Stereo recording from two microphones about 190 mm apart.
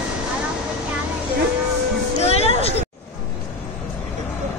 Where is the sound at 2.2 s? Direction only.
30° left (ahead or behind).